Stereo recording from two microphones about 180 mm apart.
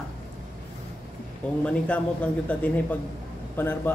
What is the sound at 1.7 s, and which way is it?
Speech, 5° left (ahead or behind).